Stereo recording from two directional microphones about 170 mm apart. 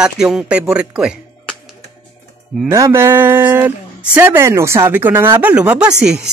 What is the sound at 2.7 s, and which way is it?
A woman's voice, 15° right (ahead or behind).